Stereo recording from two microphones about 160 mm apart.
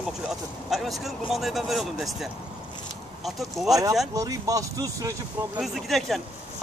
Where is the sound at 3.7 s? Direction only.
20° right (ahead or behind).